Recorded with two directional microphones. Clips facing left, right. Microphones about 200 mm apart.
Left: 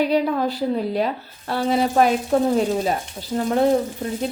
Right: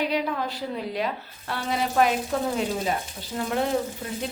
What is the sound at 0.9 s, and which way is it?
Speech, 35° left (ahead or behind).